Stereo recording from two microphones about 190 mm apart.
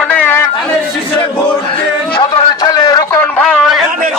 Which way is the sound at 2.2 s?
25° left (ahead or behind).